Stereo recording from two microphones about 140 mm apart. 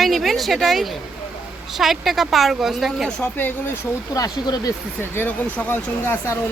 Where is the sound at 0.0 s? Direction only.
Centre (ahead or behind).